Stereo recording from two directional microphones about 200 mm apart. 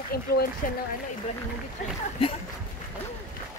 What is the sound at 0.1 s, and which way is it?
Speech, 50° left (ahead or behind).